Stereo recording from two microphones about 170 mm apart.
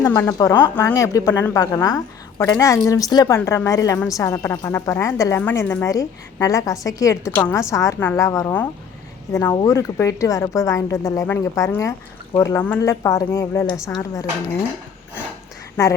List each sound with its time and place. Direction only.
0.0 s a woman's voice: 20° left (ahead or behind)